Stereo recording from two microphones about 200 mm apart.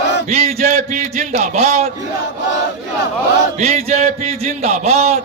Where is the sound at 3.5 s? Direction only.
30° right (ahead or behind).